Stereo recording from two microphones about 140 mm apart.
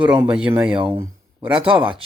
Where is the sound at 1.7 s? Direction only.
35° right (ahead or behind).